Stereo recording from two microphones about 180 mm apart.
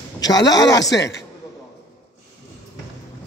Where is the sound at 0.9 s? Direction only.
75° left (ahead or behind).